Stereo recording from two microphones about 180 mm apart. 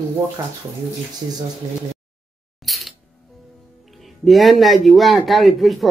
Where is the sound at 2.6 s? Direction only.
Centre (ahead or behind).